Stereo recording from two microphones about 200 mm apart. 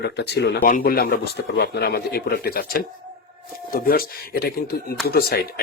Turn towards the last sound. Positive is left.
turn(degrees=50)  # may be behind; listen again after turning